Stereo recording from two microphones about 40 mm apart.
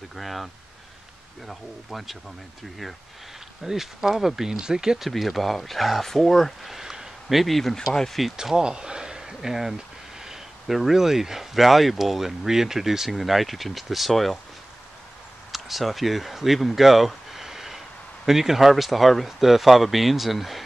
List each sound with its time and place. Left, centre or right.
0.1 s speech: centre
1.5 s speech: centre
3.6 s speech: centre
5.0 s speech: centre
6.8 s a sound: centre
7.9 s speech: centre
8.4 s speech: centre
10.2 s a sound: centre
10.8 s speech: centre
15.5 s speech: centre